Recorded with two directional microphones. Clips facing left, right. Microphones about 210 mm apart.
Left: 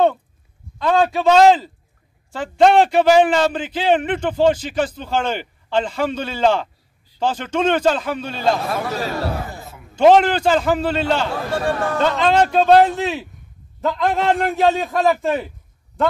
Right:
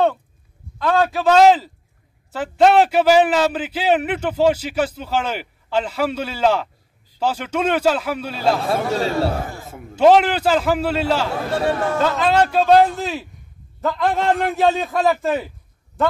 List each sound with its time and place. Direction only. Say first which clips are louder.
1.0 s a man's voice: even; centre (ahead or behind)
8.6 s a man's voice: right 3 dB; 30° right (ahead or behind)
9.9 s a man's voice: left 1 dB; 5° right (ahead or behind)
11.6 s a man's voice: right 2 dB; 20° right (ahead or behind)
12.0 s a man's voice: left 2 dB; 5° right (ahead or behind)